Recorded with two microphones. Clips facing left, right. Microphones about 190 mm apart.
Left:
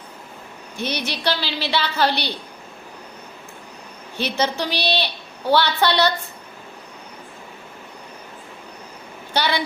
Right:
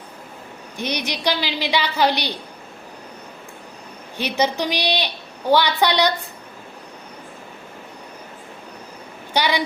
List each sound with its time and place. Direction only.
0.8 s a woman's voice: 15° right (ahead or behind)
4.2 s a woman's voice: 15° right (ahead or behind)
9.3 s a woman's voice: 15° right (ahead or behind)